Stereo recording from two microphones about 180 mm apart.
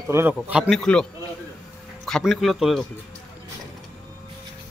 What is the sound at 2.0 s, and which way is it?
Speech, centre (ahead or behind).